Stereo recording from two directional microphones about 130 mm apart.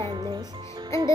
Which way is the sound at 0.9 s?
25° left (ahead or behind).